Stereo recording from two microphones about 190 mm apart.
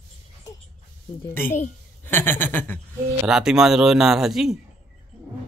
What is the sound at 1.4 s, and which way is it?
Speech, 40° left (ahead or behind).